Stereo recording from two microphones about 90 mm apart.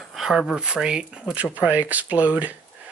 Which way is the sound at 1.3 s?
15° right (ahead or behind).